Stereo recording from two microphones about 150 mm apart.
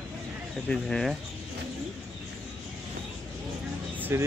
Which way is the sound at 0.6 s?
5° left (ahead or behind).